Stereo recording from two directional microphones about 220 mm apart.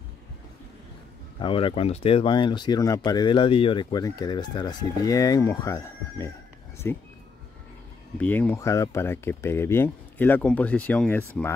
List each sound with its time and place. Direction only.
1.4 s speech: 25° left (ahead or behind)
8.2 s speech: 10° left (ahead or behind)